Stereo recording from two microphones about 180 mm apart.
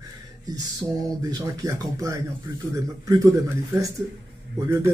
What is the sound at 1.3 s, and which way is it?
Speech, 20° right (ahead or behind).